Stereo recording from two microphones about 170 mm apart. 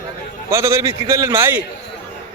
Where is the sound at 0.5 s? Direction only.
20° right (ahead or behind).